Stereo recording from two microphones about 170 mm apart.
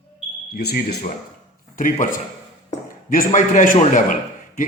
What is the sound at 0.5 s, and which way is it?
Speech, 70° left (ahead or behind).